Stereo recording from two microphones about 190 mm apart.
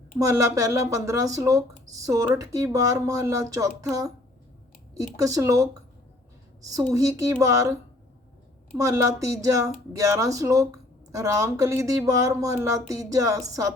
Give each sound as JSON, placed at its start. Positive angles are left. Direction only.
{"t": 0.2, "sound": "speech", "side_deg": -15}
{"t": 8.8, "sound": "speech", "side_deg": -15}